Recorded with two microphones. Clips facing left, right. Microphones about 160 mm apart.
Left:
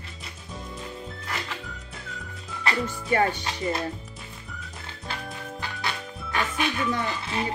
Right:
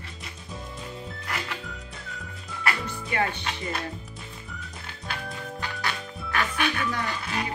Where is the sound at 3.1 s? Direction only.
40° left (ahead or behind).